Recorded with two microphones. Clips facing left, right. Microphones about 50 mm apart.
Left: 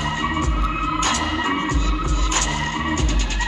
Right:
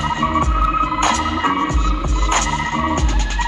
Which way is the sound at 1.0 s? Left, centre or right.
Right.